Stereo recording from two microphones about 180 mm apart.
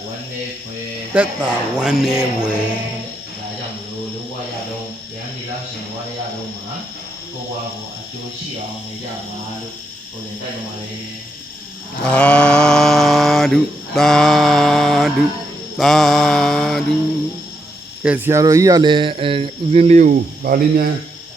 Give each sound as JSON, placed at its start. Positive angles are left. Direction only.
{"t": 1.1, "sound": "speech", "side_deg": -10}
{"t": 12.0, "sound": "mantra", "side_deg": 5}
{"t": 18.0, "sound": "speech", "side_deg": -10}